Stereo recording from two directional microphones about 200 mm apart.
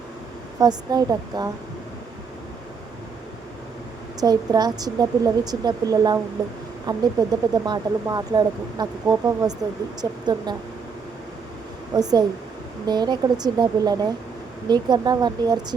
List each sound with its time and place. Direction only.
0.6 s speech: 20° right (ahead or behind)
4.2 s speech: 20° right (ahead or behind)
11.9 s speech: 20° right (ahead or behind)